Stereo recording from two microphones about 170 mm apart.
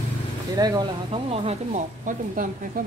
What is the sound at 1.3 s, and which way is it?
Speech, 35° right (ahead or behind).